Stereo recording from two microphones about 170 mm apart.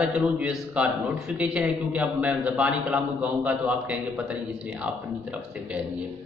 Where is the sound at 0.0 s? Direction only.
5° right (ahead or behind).